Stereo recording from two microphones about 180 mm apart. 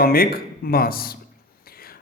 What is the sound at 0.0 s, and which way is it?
Speech, 55° left (ahead or behind).